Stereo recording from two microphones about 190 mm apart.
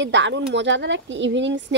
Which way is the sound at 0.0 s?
70° right (ahead or behind).